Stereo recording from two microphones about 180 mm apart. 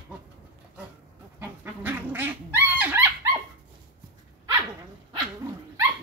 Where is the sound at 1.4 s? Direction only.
10° right (ahead or behind).